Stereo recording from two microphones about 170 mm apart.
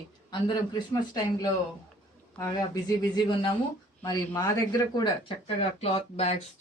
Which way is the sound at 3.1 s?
30° left (ahead or behind).